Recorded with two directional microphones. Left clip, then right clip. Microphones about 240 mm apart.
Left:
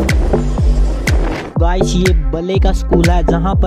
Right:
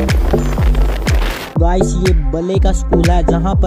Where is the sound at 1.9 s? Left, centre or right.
Left.